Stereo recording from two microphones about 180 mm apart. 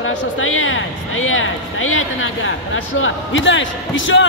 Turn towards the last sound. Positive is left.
turn(degrees=90)